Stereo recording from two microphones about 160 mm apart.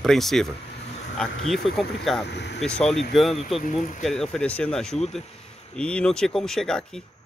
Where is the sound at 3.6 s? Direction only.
50° left (ahead or behind).